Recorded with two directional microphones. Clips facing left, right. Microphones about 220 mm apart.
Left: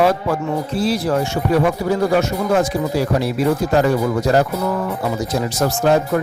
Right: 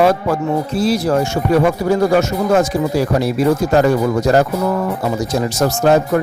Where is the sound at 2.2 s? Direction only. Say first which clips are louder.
Right 3 dB; 45° right (ahead or behind).